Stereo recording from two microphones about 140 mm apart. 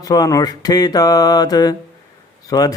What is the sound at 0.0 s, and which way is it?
Mantra, 25° left (ahead or behind).